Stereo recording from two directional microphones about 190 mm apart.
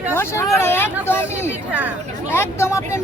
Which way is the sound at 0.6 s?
15° left (ahead or behind).